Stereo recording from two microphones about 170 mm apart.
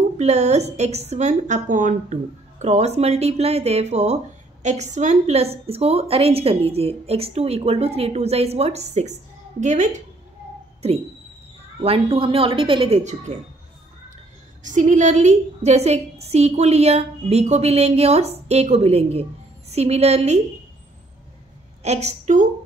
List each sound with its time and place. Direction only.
0.2 s a woman's voice: 40° right (ahead or behind)
14.6 s a woman's voice: 45° right (ahead or behind)
21.8 s a woman's voice: 40° right (ahead or behind)